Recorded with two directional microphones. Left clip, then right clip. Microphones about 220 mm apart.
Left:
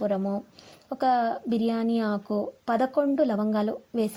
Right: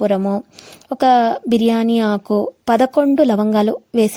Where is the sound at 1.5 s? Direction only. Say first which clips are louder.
Right 12 dB; 60° right (ahead or behind).